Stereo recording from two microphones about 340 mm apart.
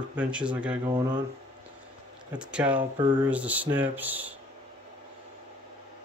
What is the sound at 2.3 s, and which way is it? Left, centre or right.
Speech, centre.